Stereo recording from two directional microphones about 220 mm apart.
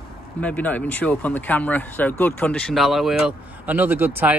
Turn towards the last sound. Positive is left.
turn(degrees=-10)  # may be behind; listen again after turning